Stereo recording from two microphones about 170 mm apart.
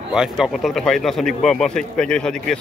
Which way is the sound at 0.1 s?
5° right (ahead or behind).